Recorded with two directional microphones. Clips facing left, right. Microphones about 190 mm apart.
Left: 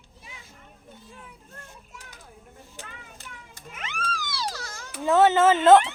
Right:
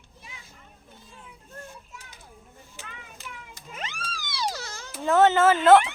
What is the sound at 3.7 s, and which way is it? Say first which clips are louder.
Music: right 1 dB; 35° right (ahead or behind).